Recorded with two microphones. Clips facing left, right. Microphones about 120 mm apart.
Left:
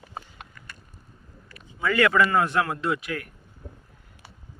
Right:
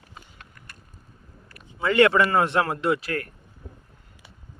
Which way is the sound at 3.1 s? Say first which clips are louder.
Right 3 dB; 45° right (ahead or behind).